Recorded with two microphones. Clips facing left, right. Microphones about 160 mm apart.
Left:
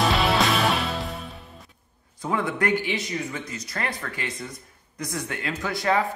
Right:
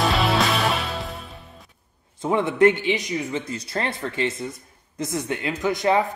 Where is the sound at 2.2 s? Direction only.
25° right (ahead or behind).